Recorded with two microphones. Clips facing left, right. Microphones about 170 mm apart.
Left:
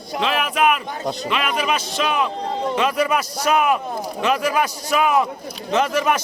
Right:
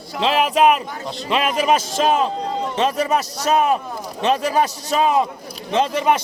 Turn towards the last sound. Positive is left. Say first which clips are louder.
# right 1 dB
turn(degrees=-25)  # may be behind; listen again after turning